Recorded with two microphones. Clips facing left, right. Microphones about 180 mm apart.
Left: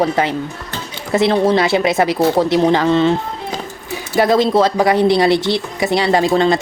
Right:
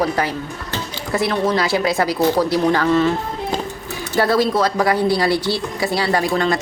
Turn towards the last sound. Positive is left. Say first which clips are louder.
# left 5 dB
turn(degrees=25)  # may be behind; listen again after turning